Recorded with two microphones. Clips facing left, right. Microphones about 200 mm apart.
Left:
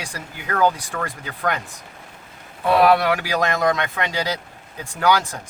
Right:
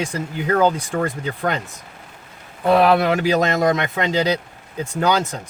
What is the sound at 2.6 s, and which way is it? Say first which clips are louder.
Speech: right 1 dB; 20° right (ahead or behind).